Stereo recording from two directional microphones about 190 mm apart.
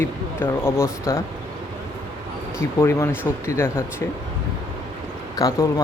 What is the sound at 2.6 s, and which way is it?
Speech, 15° left (ahead or behind).